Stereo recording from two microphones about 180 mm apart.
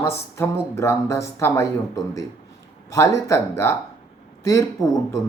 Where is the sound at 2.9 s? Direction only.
15° left (ahead or behind).